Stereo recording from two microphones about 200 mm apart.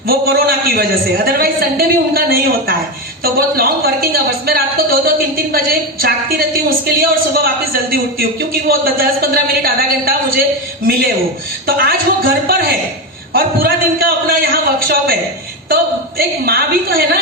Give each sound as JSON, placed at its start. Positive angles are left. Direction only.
{"t": 0.1, "sound": "speech", "side_deg": -50}
{"t": 11.6, "sound": "speech", "side_deg": -50}